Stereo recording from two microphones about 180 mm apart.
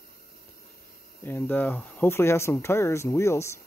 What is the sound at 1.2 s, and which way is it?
Speech, 10° left (ahead or behind).